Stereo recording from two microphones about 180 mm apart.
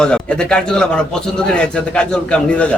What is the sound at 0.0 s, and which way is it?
A man's voice, 5° left (ahead or behind).